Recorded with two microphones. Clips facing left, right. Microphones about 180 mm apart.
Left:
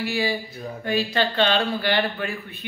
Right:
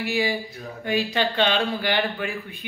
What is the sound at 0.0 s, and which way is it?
A man's voice, 15° right (ahead or behind).